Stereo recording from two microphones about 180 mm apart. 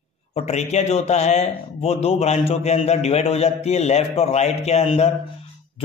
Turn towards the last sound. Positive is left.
turn(degrees=35)  # may be behind; listen again after turning